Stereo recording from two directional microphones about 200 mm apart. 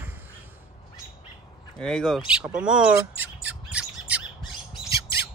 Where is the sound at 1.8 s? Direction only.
Centre (ahead or behind).